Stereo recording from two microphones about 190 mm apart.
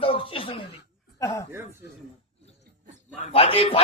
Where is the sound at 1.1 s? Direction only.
15° left (ahead or behind).